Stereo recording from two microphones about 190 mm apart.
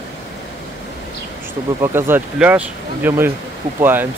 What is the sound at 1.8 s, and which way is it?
Speech, 10° right (ahead or behind).